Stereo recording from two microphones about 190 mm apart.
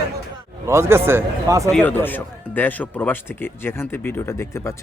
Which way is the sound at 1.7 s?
10° left (ahead or behind).